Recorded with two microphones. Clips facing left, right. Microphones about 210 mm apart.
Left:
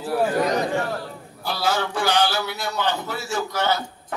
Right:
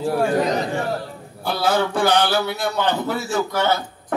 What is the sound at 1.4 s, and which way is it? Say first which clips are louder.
A man's voice: right 4 dB; 55° right (ahead or behind).